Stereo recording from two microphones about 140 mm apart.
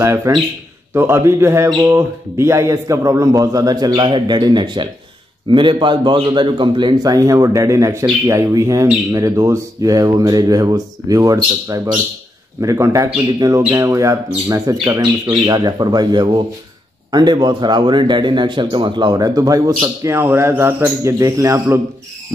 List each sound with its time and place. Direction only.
0.0 s a man's voice: 25° right (ahead or behind)